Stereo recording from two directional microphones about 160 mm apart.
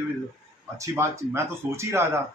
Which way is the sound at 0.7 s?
15° right (ahead or behind).